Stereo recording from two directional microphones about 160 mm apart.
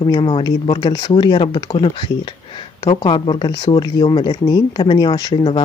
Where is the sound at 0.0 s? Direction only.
30° left (ahead or behind).